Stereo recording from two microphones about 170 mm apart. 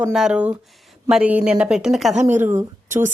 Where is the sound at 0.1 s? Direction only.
5° right (ahead or behind).